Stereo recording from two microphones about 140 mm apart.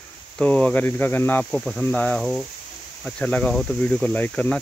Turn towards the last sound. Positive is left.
turn(degrees=10)  # may be behind; listen again after turning